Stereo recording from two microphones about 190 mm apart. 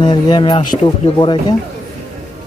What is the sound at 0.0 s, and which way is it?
Speech, 25° left (ahead or behind).